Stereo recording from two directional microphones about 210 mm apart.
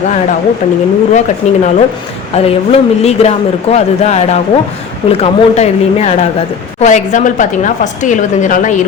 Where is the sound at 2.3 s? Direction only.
30° left (ahead or behind).